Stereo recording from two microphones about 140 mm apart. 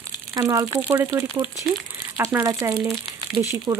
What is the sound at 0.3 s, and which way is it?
Speech, 25° right (ahead or behind).